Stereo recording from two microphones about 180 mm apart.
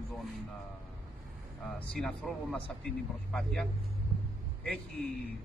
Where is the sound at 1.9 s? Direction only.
5° left (ahead or behind).